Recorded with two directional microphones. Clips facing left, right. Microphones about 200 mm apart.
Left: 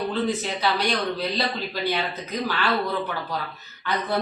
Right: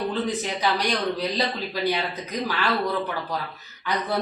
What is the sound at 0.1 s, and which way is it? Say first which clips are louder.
Speech: left 1 dB; 15° right (ahead or behind).